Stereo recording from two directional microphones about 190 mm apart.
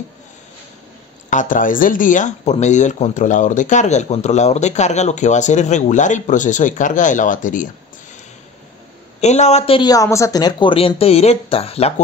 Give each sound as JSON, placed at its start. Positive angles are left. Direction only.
{"t": 1.3, "sound": "speech", "side_deg": 45}
{"t": 9.2, "sound": "speech", "side_deg": 35}